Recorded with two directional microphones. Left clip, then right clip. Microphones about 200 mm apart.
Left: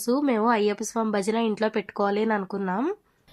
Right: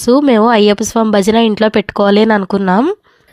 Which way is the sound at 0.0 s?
40° right (ahead or behind).